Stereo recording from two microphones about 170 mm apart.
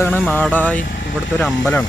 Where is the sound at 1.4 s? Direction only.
Centre (ahead or behind).